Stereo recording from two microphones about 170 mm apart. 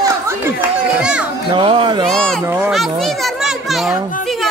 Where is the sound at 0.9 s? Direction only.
5° right (ahead or behind).